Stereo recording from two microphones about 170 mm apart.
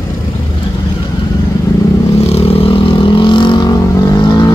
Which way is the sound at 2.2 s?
35° left (ahead or behind).